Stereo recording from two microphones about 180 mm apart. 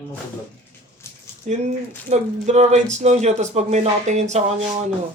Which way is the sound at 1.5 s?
40° right (ahead or behind).